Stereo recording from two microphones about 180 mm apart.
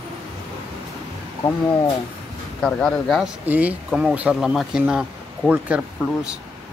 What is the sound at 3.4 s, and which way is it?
Speech, 10° right (ahead or behind).